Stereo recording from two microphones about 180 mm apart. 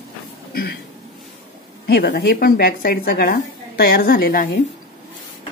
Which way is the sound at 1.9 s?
65° left (ahead or behind).